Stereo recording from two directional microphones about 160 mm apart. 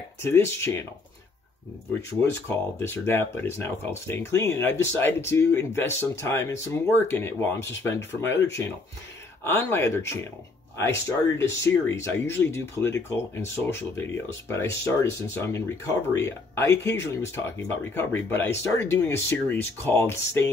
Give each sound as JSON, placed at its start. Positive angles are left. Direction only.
{"t": 0.2, "sound": "speech", "side_deg": 15}
{"t": 2.0, "sound": "speech", "side_deg": 15}